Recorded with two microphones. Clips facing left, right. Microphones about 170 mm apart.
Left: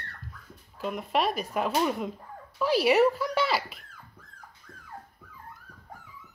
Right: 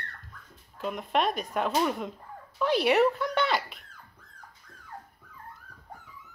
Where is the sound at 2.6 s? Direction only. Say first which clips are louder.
Left 1 dB; 5° left (ahead or behind).